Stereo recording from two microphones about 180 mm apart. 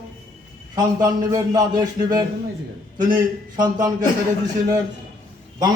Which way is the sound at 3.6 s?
20° right (ahead or behind).